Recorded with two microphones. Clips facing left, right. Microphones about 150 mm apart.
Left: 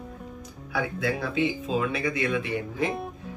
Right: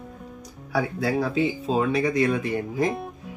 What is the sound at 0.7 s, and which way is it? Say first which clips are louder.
Speech: right 4 dB; 40° right (ahead or behind).